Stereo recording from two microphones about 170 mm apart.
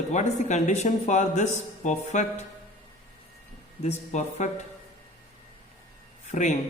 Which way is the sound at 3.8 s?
45° left (ahead or behind).